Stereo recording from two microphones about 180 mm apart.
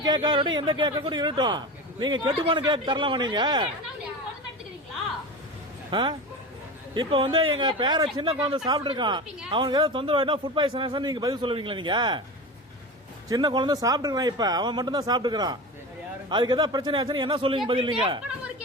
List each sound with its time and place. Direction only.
0.0 s speech: 25° right (ahead or behind)
5.9 s speech: 25° right (ahead or behind)
13.2 s speech: 20° right (ahead or behind)